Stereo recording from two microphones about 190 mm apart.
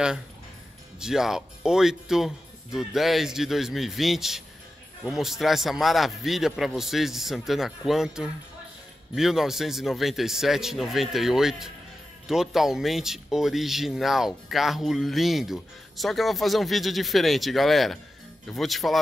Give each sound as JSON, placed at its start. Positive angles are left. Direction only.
{"t": 0.9, "sound": "speech", "side_deg": -5}